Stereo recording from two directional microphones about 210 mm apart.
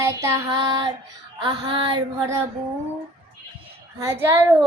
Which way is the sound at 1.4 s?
25° right (ahead or behind).